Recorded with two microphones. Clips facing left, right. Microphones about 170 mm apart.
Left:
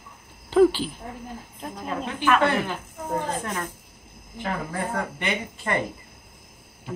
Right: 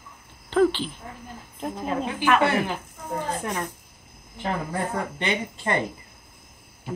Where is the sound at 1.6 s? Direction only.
10° right (ahead or behind).